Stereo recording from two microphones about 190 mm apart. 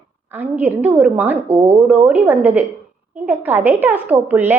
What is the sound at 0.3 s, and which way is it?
A woman's voice, 10° right (ahead or behind).